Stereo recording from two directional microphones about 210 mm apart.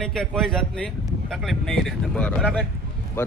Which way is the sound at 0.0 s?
Centre (ahead or behind).